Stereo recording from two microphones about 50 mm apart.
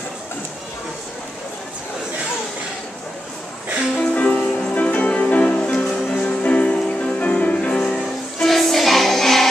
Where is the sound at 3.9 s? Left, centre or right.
Left.